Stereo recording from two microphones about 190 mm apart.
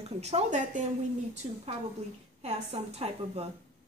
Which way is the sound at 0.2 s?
35° right (ahead or behind).